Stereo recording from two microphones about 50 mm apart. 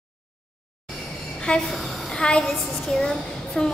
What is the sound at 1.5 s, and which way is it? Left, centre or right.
Speech, left.